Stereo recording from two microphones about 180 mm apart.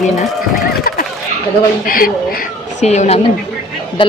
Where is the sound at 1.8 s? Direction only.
55° left (ahead or behind).